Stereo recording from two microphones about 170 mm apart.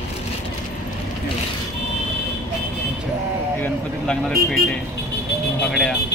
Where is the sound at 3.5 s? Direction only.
10° left (ahead or behind).